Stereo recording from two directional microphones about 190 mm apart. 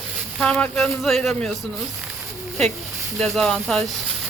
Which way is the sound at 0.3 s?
5° left (ahead or behind).